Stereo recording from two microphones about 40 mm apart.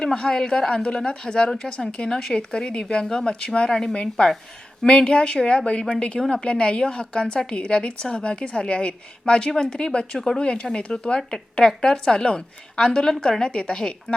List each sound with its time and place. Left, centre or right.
0.0 s a woman's voice: centre
2.3 s a woman's voice: left
10.2 s a woman's voice: centre